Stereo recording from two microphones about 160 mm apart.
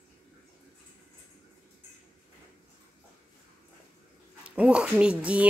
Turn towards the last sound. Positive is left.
turn(degrees=-10)  # may be behind; listen again after turning